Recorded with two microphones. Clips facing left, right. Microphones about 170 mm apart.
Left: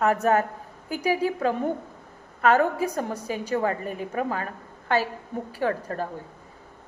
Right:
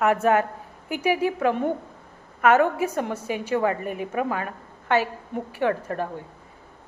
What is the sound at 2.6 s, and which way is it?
A woman's voice, 35° left (ahead or behind).